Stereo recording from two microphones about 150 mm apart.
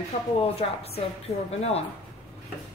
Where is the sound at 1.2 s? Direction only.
45° left (ahead or behind).